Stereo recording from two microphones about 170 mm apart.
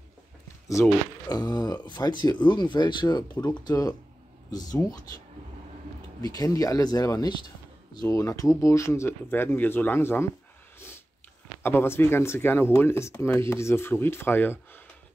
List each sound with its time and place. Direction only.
1.3 s speech: 25° left (ahead or behind)
6.2 s speech: 20° left (ahead or behind)
11.6 s speech: 15° left (ahead or behind)